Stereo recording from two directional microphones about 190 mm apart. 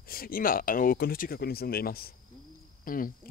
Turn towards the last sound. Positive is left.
turn(degrees=45)  # may be behind; listen again after turning